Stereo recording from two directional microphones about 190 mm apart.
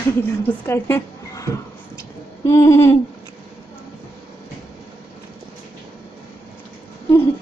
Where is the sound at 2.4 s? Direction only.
15° left (ahead or behind).